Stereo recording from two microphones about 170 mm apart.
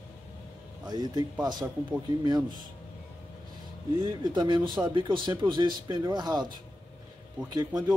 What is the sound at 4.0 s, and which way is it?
Speech, 25° right (ahead or behind).